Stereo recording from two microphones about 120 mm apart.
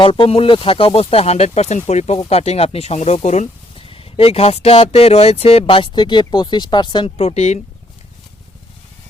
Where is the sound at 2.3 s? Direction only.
60° left (ahead or behind).